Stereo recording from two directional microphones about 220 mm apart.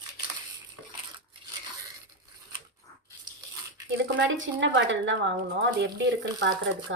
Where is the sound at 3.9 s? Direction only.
55° right (ahead or behind).